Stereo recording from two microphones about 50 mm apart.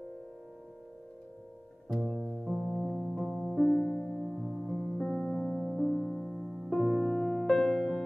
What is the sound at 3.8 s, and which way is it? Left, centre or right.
Music, left.